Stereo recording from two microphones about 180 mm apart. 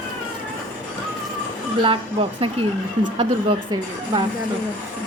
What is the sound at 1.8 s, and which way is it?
A woman's voice, 30° right (ahead or behind).